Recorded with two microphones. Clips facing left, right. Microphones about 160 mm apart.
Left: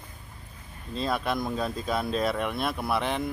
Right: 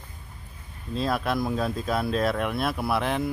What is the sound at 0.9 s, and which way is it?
Speech, centre (ahead or behind).